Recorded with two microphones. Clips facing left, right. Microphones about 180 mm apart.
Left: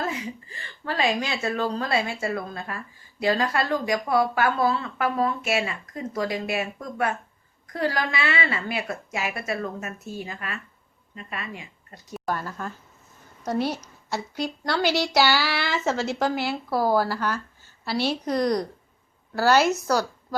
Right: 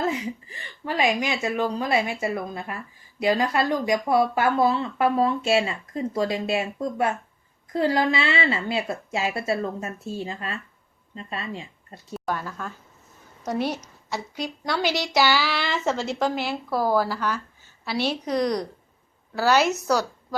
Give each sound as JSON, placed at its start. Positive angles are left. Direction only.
{"t": 0.0, "sound": "speech", "side_deg": -20}
{"t": 12.1, "sound": "a woman's voice", "side_deg": 0}